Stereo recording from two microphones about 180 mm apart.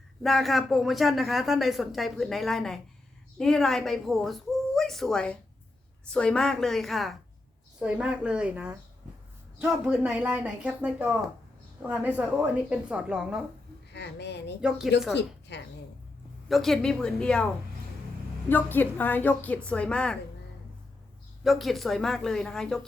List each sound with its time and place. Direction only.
0.2 s speech: centre (ahead or behind)
13.9 s a woman's voice: 70° left (ahead or behind)
16.5 s speech: centre (ahead or behind)
18.4 s a woman's voice: 10° left (ahead or behind)
21.4 s speech: centre (ahead or behind)